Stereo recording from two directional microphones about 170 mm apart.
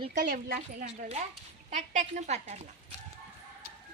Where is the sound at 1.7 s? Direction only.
45° right (ahead or behind).